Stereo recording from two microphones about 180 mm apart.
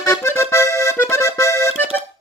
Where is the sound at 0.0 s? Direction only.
15° left (ahead or behind).